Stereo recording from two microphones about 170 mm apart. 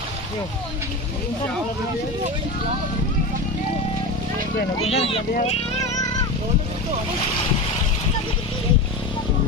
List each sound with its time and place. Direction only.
4.8 s speech: 35° left (ahead or behind)